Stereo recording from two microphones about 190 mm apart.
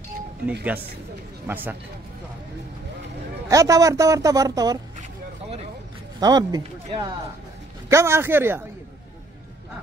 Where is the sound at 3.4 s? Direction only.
15° right (ahead or behind).